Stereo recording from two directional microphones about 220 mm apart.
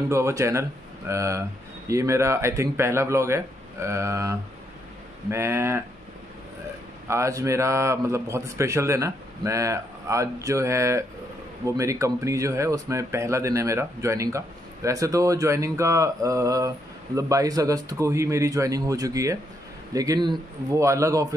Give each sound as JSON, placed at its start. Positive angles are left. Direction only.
{"t": 0.1, "sound": "speech", "side_deg": -15}
{"t": 7.1, "sound": "speech", "side_deg": -15}